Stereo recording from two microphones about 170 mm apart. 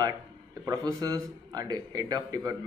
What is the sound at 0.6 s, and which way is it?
A man's voice, 20° right (ahead or behind).